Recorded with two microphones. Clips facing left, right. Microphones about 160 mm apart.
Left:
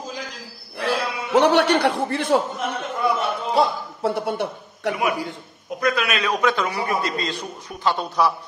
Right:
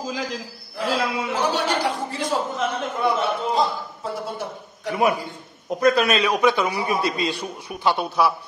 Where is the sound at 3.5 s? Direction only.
70° left (ahead or behind).